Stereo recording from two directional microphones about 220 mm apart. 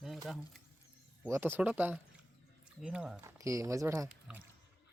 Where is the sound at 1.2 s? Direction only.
10° right (ahead or behind).